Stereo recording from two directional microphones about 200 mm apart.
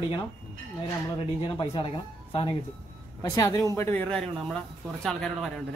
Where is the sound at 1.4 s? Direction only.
25° left (ahead or behind).